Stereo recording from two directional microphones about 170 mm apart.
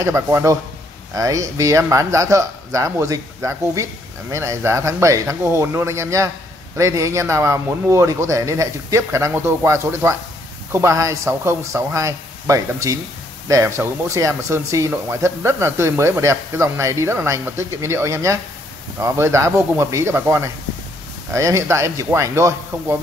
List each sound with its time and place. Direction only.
0.0 s speech: 15° right (ahead or behind)